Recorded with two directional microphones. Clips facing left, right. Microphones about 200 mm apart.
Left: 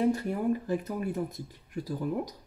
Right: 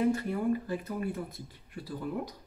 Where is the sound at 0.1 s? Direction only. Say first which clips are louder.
Left 1 dB; 45° left (ahead or behind).